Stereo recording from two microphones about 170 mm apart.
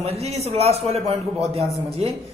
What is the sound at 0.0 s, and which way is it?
A man's voice, 35° right (ahead or behind).